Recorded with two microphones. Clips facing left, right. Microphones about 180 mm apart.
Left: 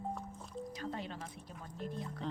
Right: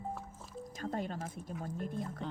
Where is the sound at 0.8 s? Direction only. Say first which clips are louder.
Right 8 dB; 45° right (ahead or behind).